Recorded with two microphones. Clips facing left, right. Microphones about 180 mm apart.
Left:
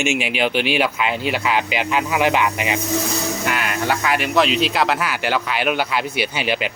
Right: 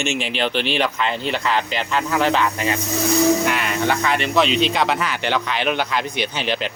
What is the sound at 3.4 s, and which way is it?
Speech, centre (ahead or behind).